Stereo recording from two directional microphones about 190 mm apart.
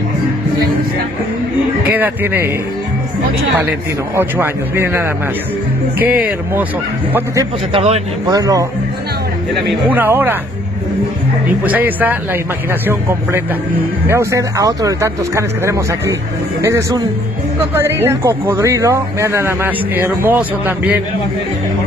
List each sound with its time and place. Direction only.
1.9 s speech: 10° right (ahead or behind)
3.5 s speech: 10° right (ahead or behind)
7.7 s speech: 30° right (ahead or behind)
8.3 s speech: 20° right (ahead or behind)
9.5 s speech: 5° right (ahead or behind)
11.6 s speech: 10° right (ahead or behind)